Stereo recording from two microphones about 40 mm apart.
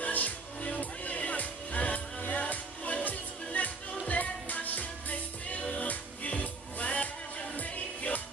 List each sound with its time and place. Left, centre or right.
0.0 s music: left